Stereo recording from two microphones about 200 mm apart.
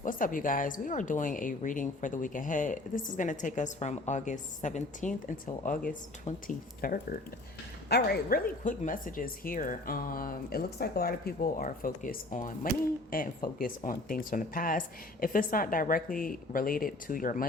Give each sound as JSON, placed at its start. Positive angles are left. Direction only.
{"t": 0.0, "sound": "speech", "side_deg": 40}
{"t": 7.9, "sound": "speech", "side_deg": 55}